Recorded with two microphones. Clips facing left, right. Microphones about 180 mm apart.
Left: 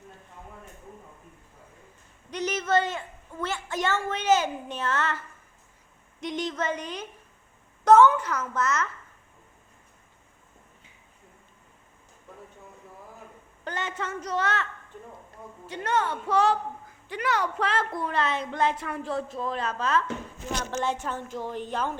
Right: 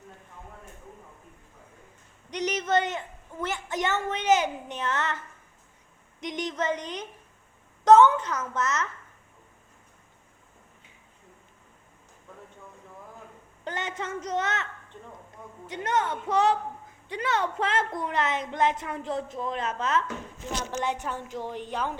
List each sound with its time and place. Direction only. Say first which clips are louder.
2.3 s a woman's voice: even; 15° right (ahead or behind)
13.7 s a woman's voice: even; 20° right (ahead or behind)
21.5 s speech: left 2 dB; 45° left (ahead or behind)